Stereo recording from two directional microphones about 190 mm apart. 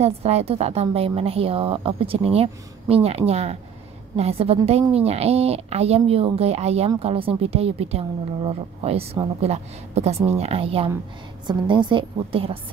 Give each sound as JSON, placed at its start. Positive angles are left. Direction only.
{"t": 0.0, "sound": "a woman's voice", "side_deg": -35}